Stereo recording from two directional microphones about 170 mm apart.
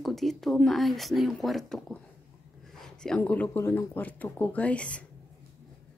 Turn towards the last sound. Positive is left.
turn(degrees=5)  # may be behind; listen again after turning